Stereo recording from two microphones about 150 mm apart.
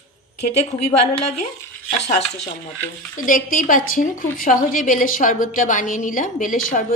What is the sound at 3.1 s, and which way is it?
A woman's voice, 65° left (ahead or behind).